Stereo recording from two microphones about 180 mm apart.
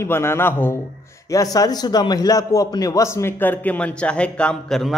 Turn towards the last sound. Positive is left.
turn(degrees=5)  # may be behind; listen again after turning